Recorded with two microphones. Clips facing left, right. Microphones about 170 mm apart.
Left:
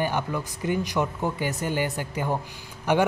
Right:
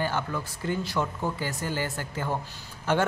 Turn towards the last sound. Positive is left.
turn(degrees=15)  # may be behind; listen again after turning